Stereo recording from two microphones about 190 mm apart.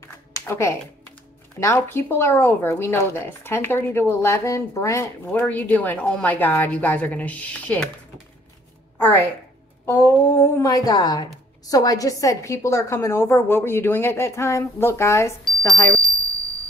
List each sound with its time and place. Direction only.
0.5 s speech: 15° left (ahead or behind)
8.9 s a sound: 10° left (ahead or behind)
9.8 s speech: 15° left (ahead or behind)